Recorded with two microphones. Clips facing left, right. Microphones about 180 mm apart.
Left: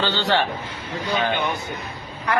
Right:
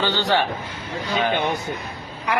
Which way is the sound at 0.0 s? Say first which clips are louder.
Right 1 dB; 15° right (ahead or behind).